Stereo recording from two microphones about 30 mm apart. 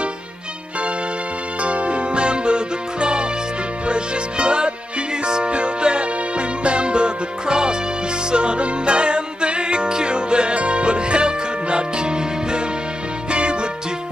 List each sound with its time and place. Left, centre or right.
1.6 s music: right